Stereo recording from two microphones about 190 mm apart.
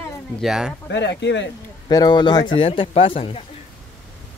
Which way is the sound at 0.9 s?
65° left (ahead or behind).